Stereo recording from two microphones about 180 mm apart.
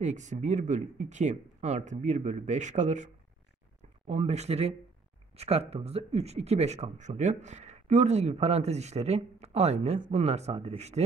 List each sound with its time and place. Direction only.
0.0 s speech: 40° right (ahead or behind)
4.1 s speech: 35° right (ahead or behind)